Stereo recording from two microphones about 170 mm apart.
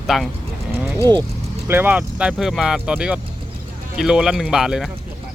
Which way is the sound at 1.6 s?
10° right (ahead or behind).